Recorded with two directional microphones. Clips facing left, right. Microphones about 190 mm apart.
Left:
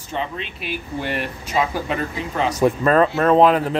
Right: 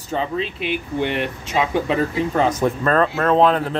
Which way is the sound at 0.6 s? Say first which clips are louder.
Right 2 dB; 20° right (ahead or behind).